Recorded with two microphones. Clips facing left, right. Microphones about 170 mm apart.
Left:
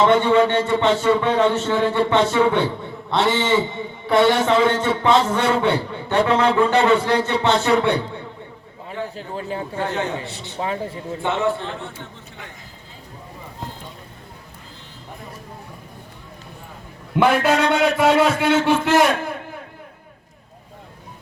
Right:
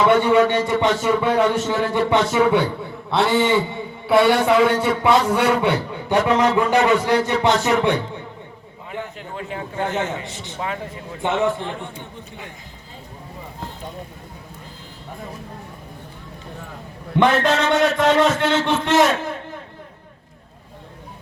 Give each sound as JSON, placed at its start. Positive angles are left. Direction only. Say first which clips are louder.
{"t": 0.0, "sound": "a man's voice", "louder": "even", "side_deg": -10}
{"t": 9.1, "sound": "a man's voice", "louder": "left 3 dB", "side_deg": 35}
{"t": 9.8, "sound": "a man's voice", "louder": "right 2 dB", "side_deg": -20}
{"t": 10.6, "sound": "a man's voice", "louder": "left 3 dB", "side_deg": 30}
{"t": 11.2, "sound": "a man's voice", "louder": "right 1 dB", "side_deg": -15}
{"t": 17.2, "sound": "a man's voice", "louder": "even", "side_deg": 5}